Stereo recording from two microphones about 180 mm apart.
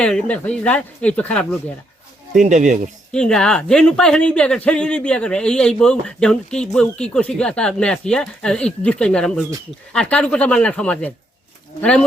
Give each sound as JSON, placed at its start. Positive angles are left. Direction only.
{"t": 0.0, "sound": "speech", "side_deg": 5}
{"t": 2.4, "sound": "speech", "side_deg": -40}
{"t": 3.1, "sound": "speech", "side_deg": 5}